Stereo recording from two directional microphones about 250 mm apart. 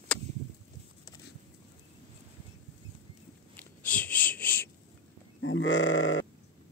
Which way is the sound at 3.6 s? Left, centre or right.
Centre.